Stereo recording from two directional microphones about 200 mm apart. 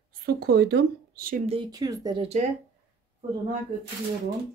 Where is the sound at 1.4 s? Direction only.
25° right (ahead or behind).